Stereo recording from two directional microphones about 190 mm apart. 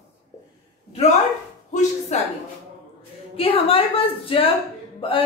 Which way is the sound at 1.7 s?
40° left (ahead or behind).